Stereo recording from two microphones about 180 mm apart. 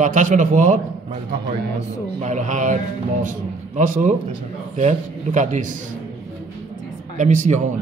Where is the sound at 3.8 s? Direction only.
45° right (ahead or behind).